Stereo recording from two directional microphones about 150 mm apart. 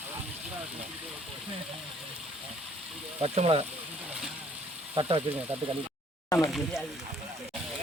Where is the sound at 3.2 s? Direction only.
45° right (ahead or behind).